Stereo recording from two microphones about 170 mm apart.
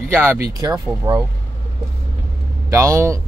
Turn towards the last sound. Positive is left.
turn(degrees=-15)  # may be behind; listen again after turning